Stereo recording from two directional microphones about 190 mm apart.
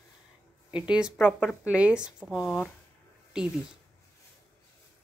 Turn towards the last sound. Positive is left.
turn(degrees=-5)  # may be behind; listen again after turning